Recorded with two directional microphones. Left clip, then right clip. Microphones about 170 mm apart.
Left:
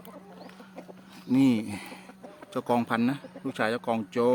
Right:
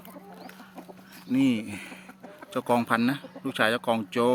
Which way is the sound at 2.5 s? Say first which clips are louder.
Right 2 dB; centre (ahead or behind).